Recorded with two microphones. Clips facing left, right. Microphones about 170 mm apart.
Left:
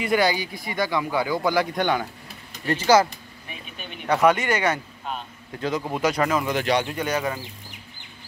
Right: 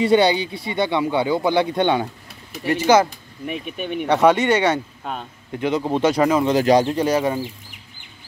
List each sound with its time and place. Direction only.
0.0 s speech: 25° right (ahead or behind)
3.4 s speech: 60° right (ahead or behind)
4.1 s speech: 25° right (ahead or behind)